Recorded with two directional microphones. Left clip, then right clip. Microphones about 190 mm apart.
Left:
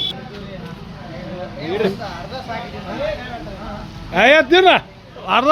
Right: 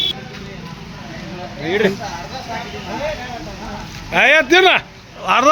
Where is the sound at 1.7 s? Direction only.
35° right (ahead or behind).